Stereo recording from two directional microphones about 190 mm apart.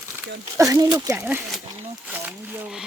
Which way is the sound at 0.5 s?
15° right (ahead or behind).